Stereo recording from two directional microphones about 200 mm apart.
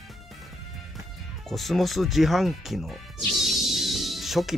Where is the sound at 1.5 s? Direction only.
Centre (ahead or behind).